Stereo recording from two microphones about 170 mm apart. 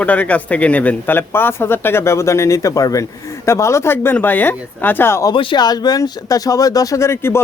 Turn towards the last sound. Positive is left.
turn(degrees=15)  # may be behind; listen again after turning